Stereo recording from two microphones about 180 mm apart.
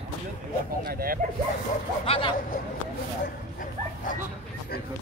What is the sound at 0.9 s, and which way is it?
Speech, 50° right (ahead or behind).